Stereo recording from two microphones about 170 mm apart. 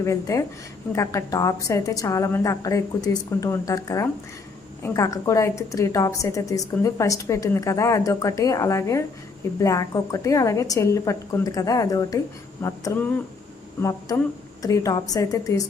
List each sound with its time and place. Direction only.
0.0 s a woman's voice: 15° left (ahead or behind)
14.6 s a woman's voice: 20° left (ahead or behind)